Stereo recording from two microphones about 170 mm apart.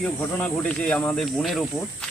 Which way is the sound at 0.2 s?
10° left (ahead or behind).